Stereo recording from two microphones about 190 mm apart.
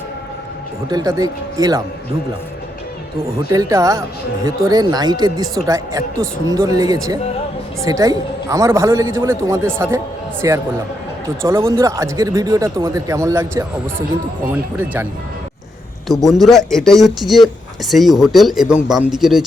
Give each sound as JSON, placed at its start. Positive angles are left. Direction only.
{"t": 0.9, "sound": "speech", "side_deg": -20}
{"t": 3.5, "sound": "speech", "side_deg": -20}
{"t": 16.0, "sound": "speech", "side_deg": 0}